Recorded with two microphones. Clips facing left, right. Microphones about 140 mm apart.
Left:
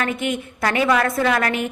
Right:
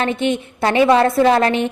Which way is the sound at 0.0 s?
25° right (ahead or behind).